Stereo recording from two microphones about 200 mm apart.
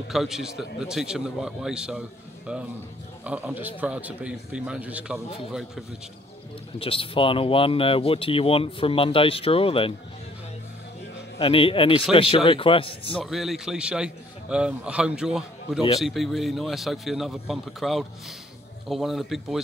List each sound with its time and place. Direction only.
0.1 s a man's voice: centre (ahead or behind)
6.8 s speech: 25° left (ahead or behind)
11.3 s speech: 25° left (ahead or behind)
13.2 s a man's voice: centre (ahead or behind)